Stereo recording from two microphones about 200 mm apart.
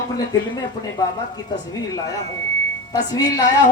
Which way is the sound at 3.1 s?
20° left (ahead or behind).